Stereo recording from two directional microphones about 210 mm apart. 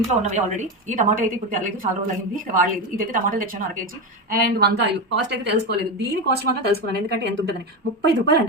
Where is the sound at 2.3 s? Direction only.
40° right (ahead or behind).